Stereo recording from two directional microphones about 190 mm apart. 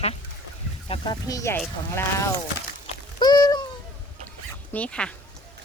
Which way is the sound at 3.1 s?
20° left (ahead or behind).